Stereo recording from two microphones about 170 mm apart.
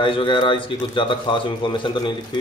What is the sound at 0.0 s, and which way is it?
Speech, 30° left (ahead or behind).